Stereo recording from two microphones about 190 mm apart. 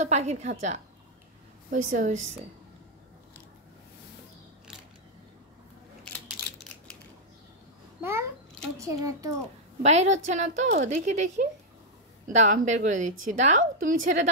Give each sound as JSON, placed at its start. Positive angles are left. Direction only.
{"t": 0.0, "sound": "a woman's voice", "side_deg": -35}
{"t": 8.0, "sound": "babbling", "side_deg": -15}
{"t": 8.7, "sound": "a child's voice", "side_deg": -15}
{"t": 9.8, "sound": "a woman's voice", "side_deg": -35}